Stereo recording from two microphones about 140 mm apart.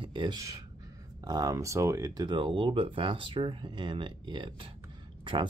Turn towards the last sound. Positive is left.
turn(degrees=-35)  # may be behind; listen again after turning